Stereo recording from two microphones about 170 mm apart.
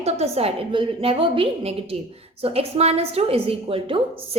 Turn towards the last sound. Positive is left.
turn(degrees=-30)  # may be behind; listen again after turning